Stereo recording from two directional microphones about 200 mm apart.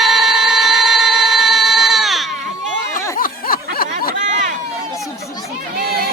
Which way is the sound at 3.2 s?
45° left (ahead or behind).